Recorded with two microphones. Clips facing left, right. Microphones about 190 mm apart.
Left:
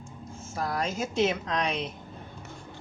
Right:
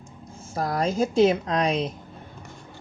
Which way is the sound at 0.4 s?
35° right (ahead or behind).